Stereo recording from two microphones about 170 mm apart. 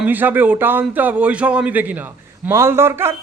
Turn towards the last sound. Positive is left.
turn(degrees=-15)  # may be behind; listen again after turning